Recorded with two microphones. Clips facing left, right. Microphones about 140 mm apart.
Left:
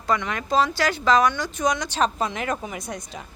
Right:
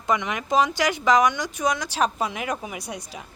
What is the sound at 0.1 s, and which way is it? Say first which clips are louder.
Speech: even; 15° right (ahead or behind).